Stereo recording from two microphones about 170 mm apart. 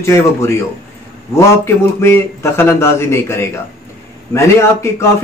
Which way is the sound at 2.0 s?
15° left (ahead or behind).